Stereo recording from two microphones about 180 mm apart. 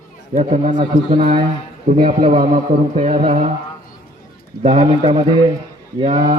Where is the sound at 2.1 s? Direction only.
45° right (ahead or behind).